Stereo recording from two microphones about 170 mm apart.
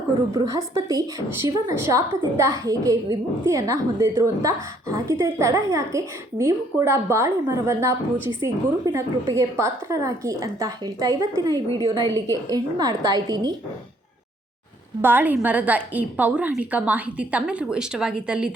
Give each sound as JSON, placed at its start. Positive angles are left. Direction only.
{"t": 0.3, "sound": "a woman's voice", "side_deg": -20}
{"t": 15.0, "sound": "a woman's voice", "side_deg": -10}